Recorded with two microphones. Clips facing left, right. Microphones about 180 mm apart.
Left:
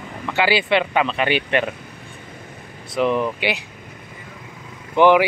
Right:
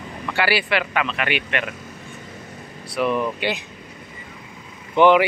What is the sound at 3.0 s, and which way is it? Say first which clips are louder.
Speech: left 2 dB; 15° left (ahead or behind).